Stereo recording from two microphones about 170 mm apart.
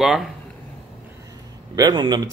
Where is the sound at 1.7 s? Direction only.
25° right (ahead or behind).